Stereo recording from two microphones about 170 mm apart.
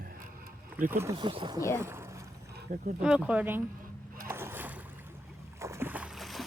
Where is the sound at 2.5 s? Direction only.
65° right (ahead or behind).